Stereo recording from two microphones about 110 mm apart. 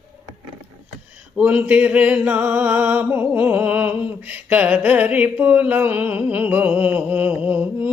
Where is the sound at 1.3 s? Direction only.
15° right (ahead or behind).